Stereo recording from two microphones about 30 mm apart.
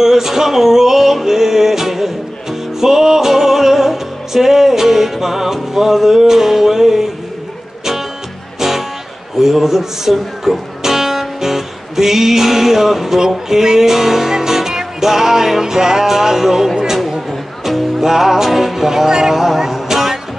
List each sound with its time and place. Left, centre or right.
0.0 s music: centre
8.5 s music: centre
17.3 s music: centre
18.0 s music: centre